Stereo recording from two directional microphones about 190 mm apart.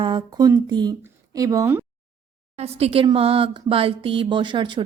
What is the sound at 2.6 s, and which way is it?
Speech, 35° right (ahead or behind).